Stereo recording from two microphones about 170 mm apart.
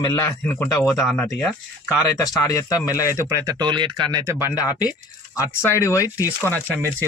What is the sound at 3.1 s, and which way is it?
Speech, 15° right (ahead or behind).